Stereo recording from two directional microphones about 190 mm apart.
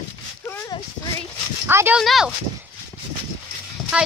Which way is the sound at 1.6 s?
10° right (ahead or behind).